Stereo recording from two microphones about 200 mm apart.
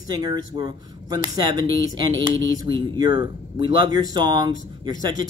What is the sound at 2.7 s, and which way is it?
Speech, 20° right (ahead or behind).